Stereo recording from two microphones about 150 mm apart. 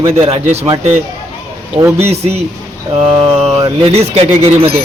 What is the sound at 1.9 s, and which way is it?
Speech, 45° right (ahead or behind).